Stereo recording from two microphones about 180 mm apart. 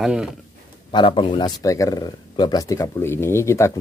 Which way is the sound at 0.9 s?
30° left (ahead or behind).